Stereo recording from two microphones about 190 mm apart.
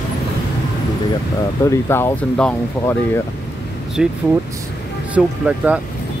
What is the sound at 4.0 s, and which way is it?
Speech, 5° right (ahead or behind).